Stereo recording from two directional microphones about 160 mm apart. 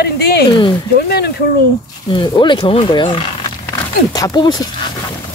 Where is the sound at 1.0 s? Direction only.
90° left.